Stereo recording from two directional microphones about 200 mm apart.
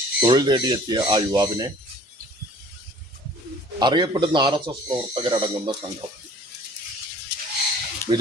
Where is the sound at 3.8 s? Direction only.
20° right (ahead or behind).